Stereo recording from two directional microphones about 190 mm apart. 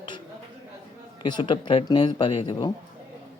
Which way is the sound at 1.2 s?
25° left (ahead or behind).